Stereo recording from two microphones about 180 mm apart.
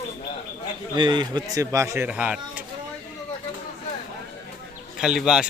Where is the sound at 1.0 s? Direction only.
25° right (ahead or behind); by 2.6 s 5° right (ahead or behind).